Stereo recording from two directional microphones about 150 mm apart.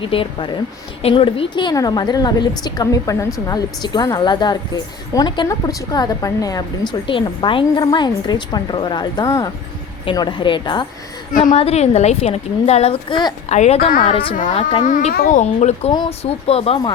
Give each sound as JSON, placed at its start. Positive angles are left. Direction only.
{"t": 0.0, "sound": "a woman's voice", "side_deg": 35}
{"t": 11.5, "sound": "a woman's voice", "side_deg": 45}
{"t": 13.5, "sound": "a woman's voice", "side_deg": 45}
{"t": 14.3, "sound": "a woman's voice", "side_deg": 55}
{"t": 15.1, "sound": "speech", "side_deg": 70}
{"t": 16.0, "sound": "a woman's voice", "side_deg": 40}